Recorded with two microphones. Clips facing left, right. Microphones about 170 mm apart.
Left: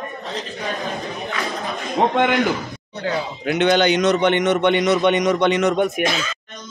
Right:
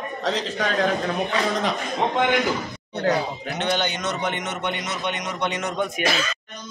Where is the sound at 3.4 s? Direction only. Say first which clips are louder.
Left 8 dB; 75° left (ahead or behind).